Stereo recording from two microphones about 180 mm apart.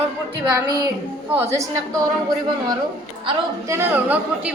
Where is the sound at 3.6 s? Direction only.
10° right (ahead or behind).